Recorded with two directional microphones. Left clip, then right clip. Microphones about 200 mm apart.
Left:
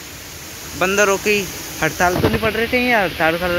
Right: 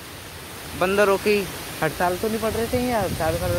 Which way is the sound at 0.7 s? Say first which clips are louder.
Left 3 dB; 5° left (ahead or behind).